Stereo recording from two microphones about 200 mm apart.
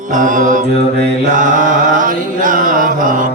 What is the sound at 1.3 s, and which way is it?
Chant, 40° right (ahead or behind).